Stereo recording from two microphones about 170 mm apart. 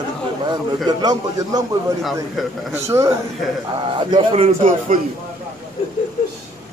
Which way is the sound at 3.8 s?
30° right (ahead or behind).